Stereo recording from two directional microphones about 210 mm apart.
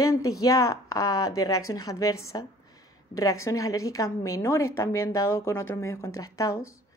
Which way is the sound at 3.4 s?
15° left (ahead or behind).